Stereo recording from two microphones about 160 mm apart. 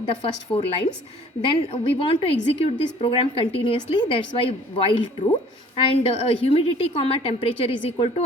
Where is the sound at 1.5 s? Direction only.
35° left (ahead or behind).